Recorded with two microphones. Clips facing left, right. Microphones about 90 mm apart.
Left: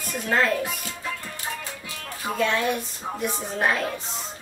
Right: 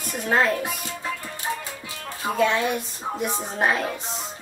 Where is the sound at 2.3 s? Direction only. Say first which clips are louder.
Right 2 dB; 20° right (ahead or behind).